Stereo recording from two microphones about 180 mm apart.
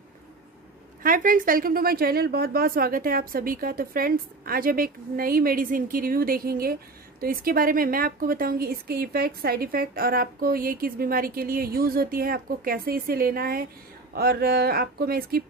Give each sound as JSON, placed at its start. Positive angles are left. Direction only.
{"t": 1.0, "sound": "a woman's voice", "side_deg": -50}